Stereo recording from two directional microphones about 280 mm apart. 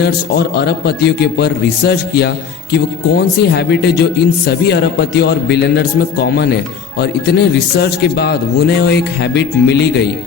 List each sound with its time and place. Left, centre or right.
0.0 s speech: left